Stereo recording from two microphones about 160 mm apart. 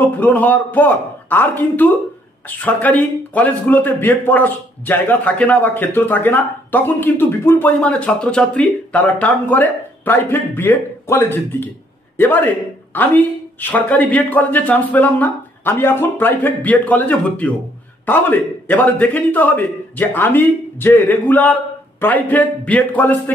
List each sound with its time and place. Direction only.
0.0 s a man's voice: 10° left (ahead or behind)